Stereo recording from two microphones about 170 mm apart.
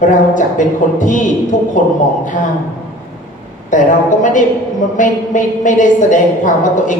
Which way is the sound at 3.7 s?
50° left (ahead or behind).